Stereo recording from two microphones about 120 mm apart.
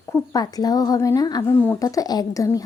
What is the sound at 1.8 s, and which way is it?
Speech, 30° left (ahead or behind).